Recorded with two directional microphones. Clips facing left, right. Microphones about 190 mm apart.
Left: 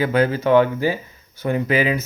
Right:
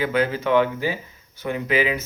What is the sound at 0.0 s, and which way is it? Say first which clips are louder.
A man's voice: left 4 dB; 40° left (ahead or behind).